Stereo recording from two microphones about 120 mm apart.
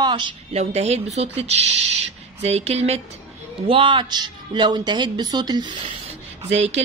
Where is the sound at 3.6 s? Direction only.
45° right (ahead or behind).